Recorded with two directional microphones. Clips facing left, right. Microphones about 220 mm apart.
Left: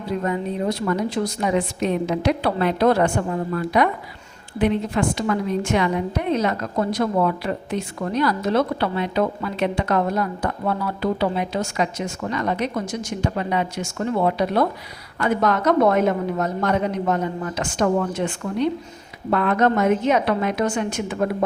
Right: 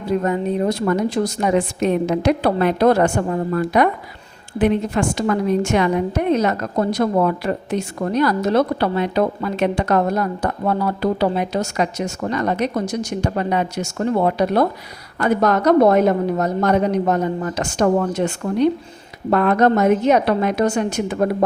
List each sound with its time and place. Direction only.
0.2 s a woman's voice: 45° right (ahead or behind)
12.8 s speech: 70° right (ahead or behind)
13.2 s a woman's voice: 45° right (ahead or behind)